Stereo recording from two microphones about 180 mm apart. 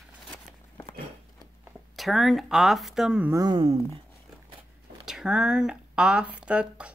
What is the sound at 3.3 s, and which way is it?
Speech, 20° right (ahead or behind).